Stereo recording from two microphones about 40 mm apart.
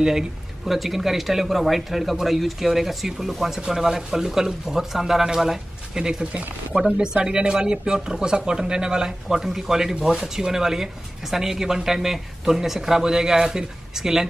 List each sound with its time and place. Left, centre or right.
0.0 s speech: centre